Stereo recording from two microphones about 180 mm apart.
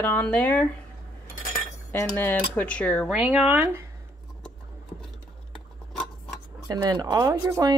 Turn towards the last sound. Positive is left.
turn(degrees=-20)  # may be behind; listen again after turning